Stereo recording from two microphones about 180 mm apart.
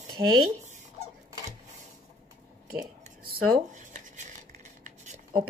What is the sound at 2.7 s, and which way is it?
Scissors, 55° right (ahead or behind).